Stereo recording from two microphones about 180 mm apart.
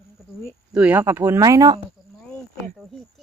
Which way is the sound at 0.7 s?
5° right (ahead or behind).